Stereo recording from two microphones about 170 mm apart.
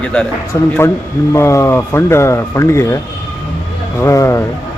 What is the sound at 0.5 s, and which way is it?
Speech, 20° left (ahead or behind).